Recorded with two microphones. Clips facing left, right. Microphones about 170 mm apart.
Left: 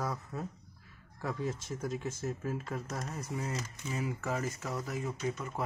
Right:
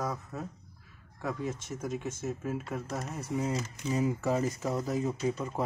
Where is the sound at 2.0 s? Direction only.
20° right (ahead or behind).